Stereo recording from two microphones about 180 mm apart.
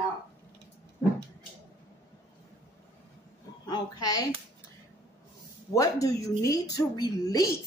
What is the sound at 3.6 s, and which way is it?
Speech, 20° left (ahead or behind).